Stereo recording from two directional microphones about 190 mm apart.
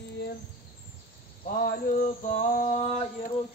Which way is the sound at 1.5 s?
50° left (ahead or behind).